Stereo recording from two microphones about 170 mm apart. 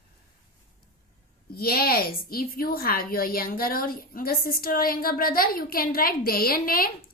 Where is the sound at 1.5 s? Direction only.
65° left (ahead or behind).